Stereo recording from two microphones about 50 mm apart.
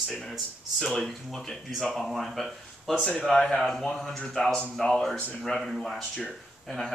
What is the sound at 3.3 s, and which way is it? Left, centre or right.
Speech, centre.